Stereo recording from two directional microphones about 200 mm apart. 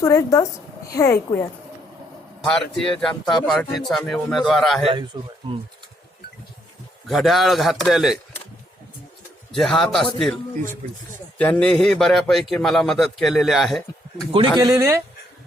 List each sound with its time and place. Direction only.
0.0 s a woman's voice: 15° left (ahead or behind)
2.4 s a man's voice: centre (ahead or behind)
5.1 s speech: 15° right (ahead or behind)
7.1 s a man's voice: centre (ahead or behind)
9.5 s a man's voice: centre (ahead or behind)
14.6 s speech: 15° right (ahead or behind)